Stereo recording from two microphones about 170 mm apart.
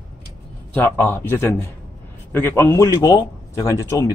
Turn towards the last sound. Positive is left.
turn(degrees=20)  # may be behind; listen again after turning